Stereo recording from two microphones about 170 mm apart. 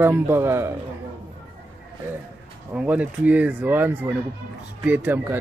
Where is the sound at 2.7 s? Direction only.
5° right (ahead or behind).